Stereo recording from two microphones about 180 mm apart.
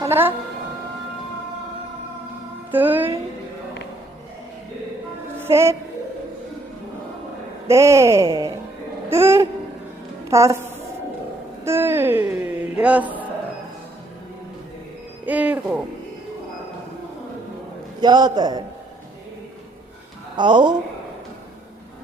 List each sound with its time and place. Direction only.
0.0 s speech: 15° right (ahead or behind)
2.7 s speech: 10° right (ahead or behind)
5.4 s music: 15° right (ahead or behind)
7.7 s speech: 15° right (ahead or behind)
9.0 s babbling: 15° right (ahead or behind)
10.2 s a child's voice: 15° right (ahead or behind)
15.3 s speech: 10° right (ahead or behind)
18.0 s a man's voice: 25° right (ahead or behind)
20.3 s speech: 25° right (ahead or behind)